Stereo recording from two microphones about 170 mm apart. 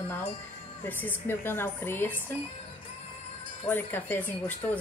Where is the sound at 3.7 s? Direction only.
10° left (ahead or behind).